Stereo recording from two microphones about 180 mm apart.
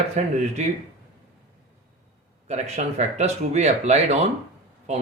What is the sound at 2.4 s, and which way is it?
Speech, 35° right (ahead or behind).